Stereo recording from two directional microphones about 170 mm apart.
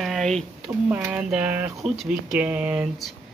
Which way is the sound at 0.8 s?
10° right (ahead or behind).